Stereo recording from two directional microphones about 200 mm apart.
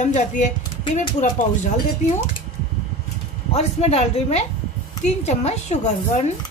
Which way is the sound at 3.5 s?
30° left (ahead or behind).